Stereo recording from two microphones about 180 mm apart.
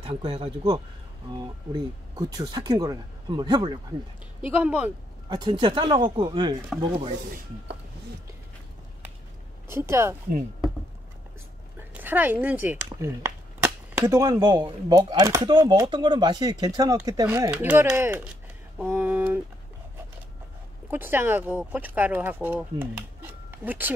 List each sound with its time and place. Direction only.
0.0 s speech: 30° right (ahead or behind)
2.1 s speech: 20° right (ahead or behind)
4.4 s speech: 5° right (ahead or behind)
5.3 s speech: 25° right (ahead or behind)
6.7 s rub: centre (ahead or behind)
9.7 s speech: 15° right (ahead or behind)
11.9 s speech: 10° right (ahead or behind)
20.9 s speech: 10° right (ahead or behind)